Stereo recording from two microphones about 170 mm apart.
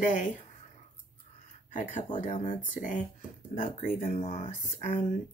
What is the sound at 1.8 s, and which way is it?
Speech, 50° left (ahead or behind).